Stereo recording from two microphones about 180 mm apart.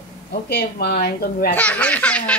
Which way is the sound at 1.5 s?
10° left (ahead or behind).